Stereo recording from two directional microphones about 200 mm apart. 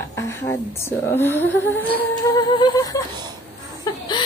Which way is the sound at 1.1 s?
10° left (ahead or behind).